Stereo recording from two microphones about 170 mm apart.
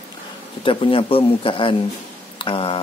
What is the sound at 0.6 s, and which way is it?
A man's voice, 30° left (ahead or behind).